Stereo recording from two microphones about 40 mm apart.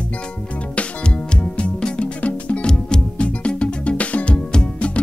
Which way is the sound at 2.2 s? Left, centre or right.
Left.